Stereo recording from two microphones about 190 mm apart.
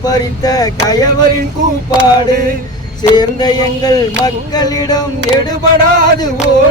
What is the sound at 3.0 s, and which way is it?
Music, 20° left (ahead or behind).